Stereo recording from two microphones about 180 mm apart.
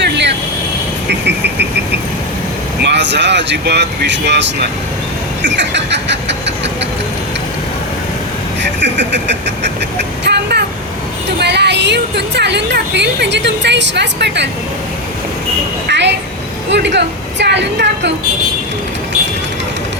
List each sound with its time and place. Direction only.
0.0 s vehicle: 75° right (ahead or behind)
2.8 s speech: 75° right (ahead or behind)
5.5 s speech: 75° right (ahead or behind)
8.8 s speech: 75° right (ahead or behind)
10.2 s vehicle: 70° right (ahead or behind)
11.3 s a woman's voice: 70° right (ahead or behind)
15.9 s a woman's voice: 75° right (ahead or behind)